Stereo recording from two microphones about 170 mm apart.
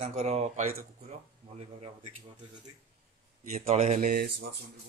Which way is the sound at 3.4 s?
40° right (ahead or behind).